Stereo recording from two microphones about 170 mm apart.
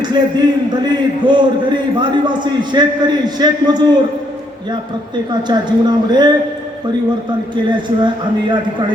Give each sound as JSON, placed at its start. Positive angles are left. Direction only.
{"t": 0.0, "sound": "a man's voice", "side_deg": -25}
{"t": 7.5, "sound": "a man's voice", "side_deg": -25}